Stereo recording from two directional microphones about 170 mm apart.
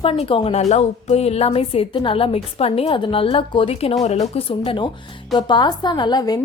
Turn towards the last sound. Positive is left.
turn(degrees=25)  # may be behind; listen again after turning